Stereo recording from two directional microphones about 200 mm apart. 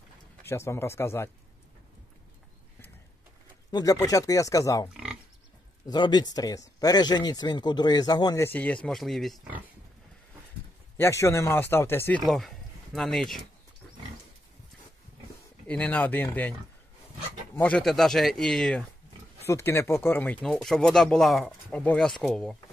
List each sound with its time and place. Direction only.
0.4 s speech: 15° left (ahead or behind)
3.7 s speech: 20° left (ahead or behind)
5.9 s speech: 20° left (ahead or behind); by 9.6 s centre (ahead or behind)
11.0 s speech: 15° left (ahead or behind)
12.2 s speech: centre (ahead or behind)
15.6 s speech: 5° left (ahead or behind)
17.6 s speech: 5° left (ahead or behind)